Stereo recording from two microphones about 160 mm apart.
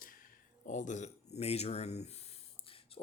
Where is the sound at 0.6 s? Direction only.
50° left (ahead or behind).